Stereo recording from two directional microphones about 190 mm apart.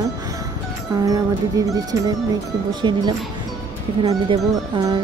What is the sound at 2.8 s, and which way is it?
Speech, 25° right (ahead or behind).